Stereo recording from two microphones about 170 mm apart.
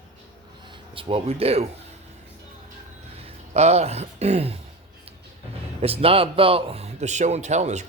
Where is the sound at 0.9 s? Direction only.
30° right (ahead or behind).